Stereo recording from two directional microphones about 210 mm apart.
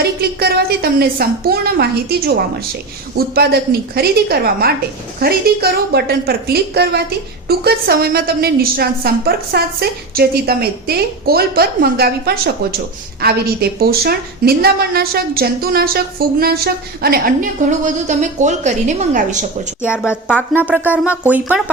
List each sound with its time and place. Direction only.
0.0 s a woman's voice: 50° right (ahead or behind)
19.9 s a woman's voice: 10° left (ahead or behind)
20.5 s speech: 10° right (ahead or behind)